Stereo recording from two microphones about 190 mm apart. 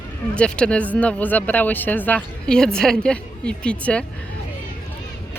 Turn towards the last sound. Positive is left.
turn(degrees=5)  # may be behind; listen again after turning